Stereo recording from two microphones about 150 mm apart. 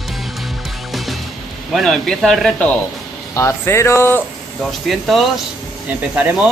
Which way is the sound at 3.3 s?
15° left (ahead or behind).